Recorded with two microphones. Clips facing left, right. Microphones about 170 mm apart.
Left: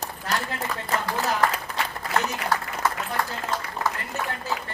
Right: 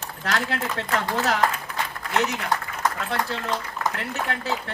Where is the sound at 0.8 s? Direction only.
90° right.